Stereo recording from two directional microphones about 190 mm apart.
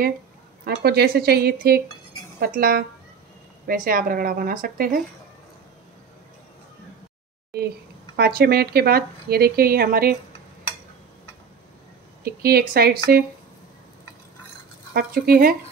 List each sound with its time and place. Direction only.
0.8 s a woman's voice: 55° right (ahead or behind)
8.2 s speech: 55° right (ahead or behind)
12.3 s speech: 50° right (ahead or behind)
15.0 s speech: 50° right (ahead or behind)